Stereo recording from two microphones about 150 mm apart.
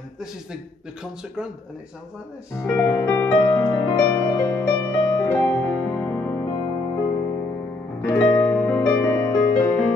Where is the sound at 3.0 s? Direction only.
15° left (ahead or behind).